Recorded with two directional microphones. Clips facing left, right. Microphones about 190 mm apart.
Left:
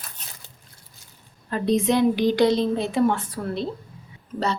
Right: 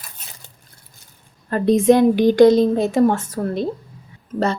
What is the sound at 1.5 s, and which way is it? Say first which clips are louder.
A woman's voice: right 7 dB; 50° right (ahead or behind).